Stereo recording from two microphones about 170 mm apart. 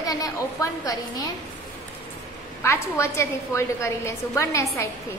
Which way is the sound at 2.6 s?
15° left (ahead or behind).